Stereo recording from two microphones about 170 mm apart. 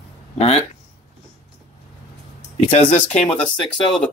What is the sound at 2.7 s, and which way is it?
Speech, 40° left (ahead or behind).